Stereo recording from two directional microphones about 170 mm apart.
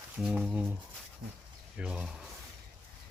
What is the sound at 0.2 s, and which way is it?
Speech, 5° right (ahead or behind).